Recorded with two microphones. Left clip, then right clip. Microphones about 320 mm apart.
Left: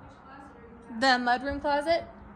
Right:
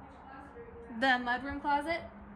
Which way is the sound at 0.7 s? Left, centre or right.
Centre.